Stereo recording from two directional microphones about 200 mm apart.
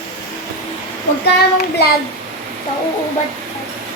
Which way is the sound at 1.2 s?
55° left (ahead or behind).